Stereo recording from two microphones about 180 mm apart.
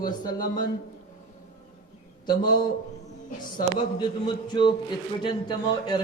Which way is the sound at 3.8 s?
25° left (ahead or behind).